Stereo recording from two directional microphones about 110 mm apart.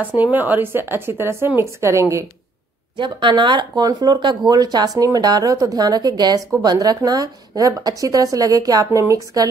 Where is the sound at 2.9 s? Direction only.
45° right (ahead or behind).